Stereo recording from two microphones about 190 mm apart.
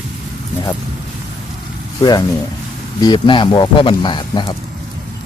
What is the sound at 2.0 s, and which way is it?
Speech, 20° left (ahead or behind).